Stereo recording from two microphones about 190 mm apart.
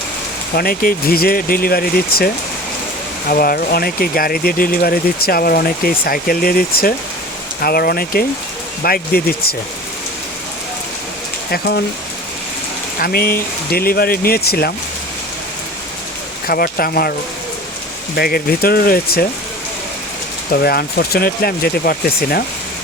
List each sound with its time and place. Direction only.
0.5 s speech: 50° left (ahead or behind)
11.5 s speech: 55° left (ahead or behind)
13.0 s speech: 50° left (ahead or behind)
16.5 s speech: 50° left (ahead or behind)
18.2 s speech: 50° left (ahead or behind)
20.5 s speech: 55° left (ahead or behind)